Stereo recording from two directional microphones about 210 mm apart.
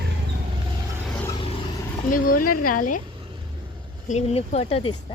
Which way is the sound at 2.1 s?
40° left (ahead or behind).